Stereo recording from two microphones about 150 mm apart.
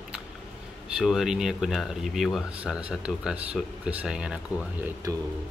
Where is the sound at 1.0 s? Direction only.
Centre (ahead or behind).